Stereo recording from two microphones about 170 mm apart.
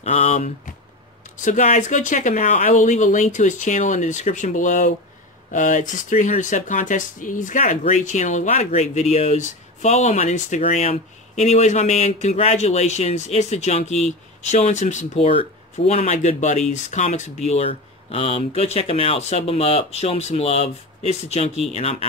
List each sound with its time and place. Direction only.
0.0 s speech: 40° left (ahead or behind)